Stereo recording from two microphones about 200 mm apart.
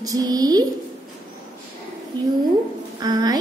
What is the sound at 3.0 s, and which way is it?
Speech, 20° right (ahead or behind).